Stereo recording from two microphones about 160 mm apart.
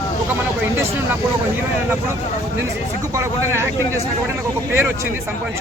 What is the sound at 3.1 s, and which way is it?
Speech, 15° right (ahead or behind).